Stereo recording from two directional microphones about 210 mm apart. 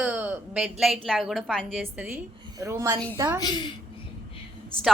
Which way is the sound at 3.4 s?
20° left (ahead or behind).